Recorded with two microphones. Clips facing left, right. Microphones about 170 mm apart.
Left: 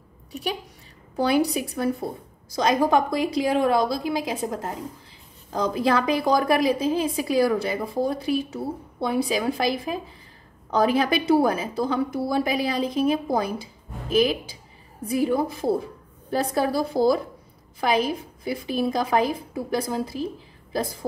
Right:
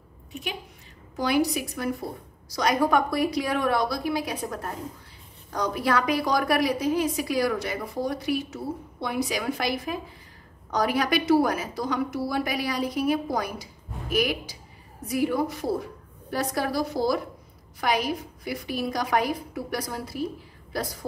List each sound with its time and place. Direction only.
1.2 s a woman's voice: 30° left (ahead or behind)